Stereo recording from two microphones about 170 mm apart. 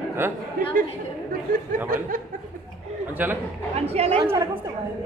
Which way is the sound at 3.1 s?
10° right (ahead or behind).